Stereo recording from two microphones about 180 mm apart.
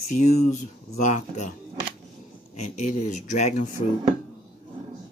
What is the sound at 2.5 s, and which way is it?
Speech, 40° left (ahead or behind).